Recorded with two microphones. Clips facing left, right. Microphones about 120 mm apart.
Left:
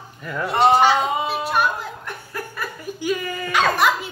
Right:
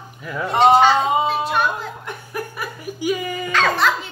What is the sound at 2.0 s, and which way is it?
Hiccup, 15° right (ahead or behind).